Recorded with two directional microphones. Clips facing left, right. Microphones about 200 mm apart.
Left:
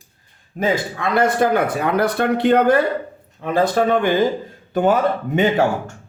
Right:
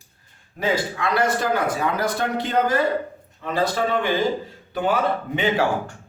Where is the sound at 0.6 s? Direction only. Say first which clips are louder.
Left 3 dB; 50° left (ahead or behind).